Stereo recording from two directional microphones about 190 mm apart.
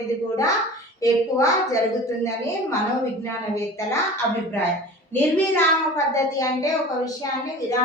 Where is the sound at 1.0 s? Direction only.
15° left (ahead or behind).